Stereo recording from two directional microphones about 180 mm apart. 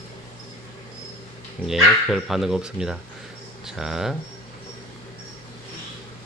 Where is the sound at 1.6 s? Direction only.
Centre (ahead or behind).